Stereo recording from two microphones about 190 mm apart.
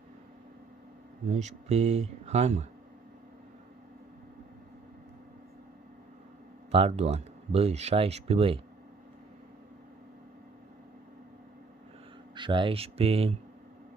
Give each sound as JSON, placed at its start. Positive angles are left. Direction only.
{"t": 1.3, "sound": "speech", "side_deg": -35}
{"t": 6.7, "sound": "speech", "side_deg": -30}
{"t": 12.4, "sound": "speech", "side_deg": -25}